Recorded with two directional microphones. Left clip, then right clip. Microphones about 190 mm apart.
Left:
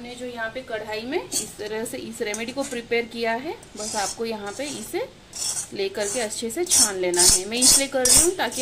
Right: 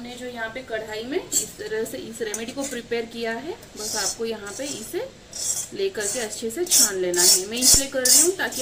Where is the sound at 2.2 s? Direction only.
30° left (ahead or behind).